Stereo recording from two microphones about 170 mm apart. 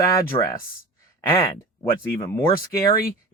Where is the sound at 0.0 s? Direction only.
15° left (ahead or behind).